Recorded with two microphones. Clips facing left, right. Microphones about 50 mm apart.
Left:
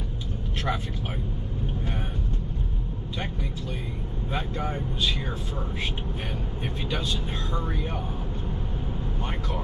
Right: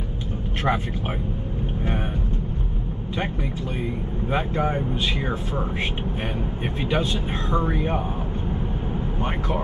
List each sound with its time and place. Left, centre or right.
0.7 s speech: right
4.3 s speech: right